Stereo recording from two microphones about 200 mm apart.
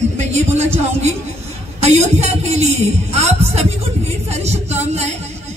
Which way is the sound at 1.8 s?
35° right (ahead or behind).